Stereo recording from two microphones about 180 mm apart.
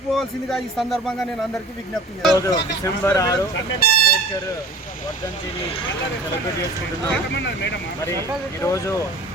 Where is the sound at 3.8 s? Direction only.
55° left (ahead or behind).